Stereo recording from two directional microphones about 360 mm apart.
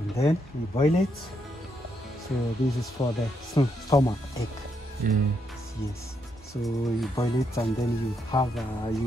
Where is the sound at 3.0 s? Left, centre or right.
Centre.